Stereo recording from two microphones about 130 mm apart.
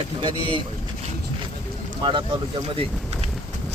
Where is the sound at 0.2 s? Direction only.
40° right (ahead or behind).